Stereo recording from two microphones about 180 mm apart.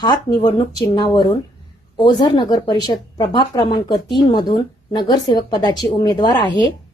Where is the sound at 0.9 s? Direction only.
25° left (ahead or behind).